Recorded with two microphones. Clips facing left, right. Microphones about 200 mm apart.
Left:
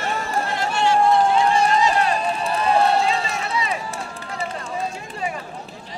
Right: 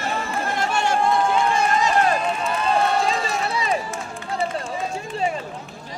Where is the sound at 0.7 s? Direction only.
45° right (ahead or behind).